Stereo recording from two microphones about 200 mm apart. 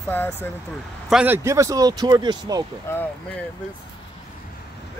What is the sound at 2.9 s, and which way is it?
Speech, 10° left (ahead or behind).